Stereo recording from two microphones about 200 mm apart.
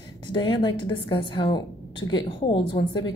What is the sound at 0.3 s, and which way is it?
Speech, 25° left (ahead or behind).